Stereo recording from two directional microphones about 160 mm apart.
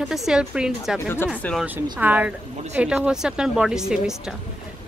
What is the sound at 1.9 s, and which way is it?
A woman's voice, 10° right (ahead or behind).